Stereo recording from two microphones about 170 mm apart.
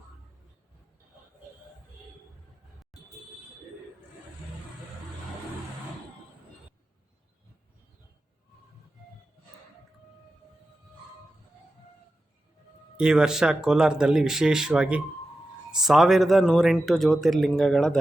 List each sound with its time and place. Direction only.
13.0 s speech: 5° right (ahead or behind)